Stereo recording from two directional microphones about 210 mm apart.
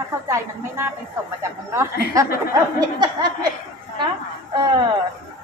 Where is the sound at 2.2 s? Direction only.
15° right (ahead or behind).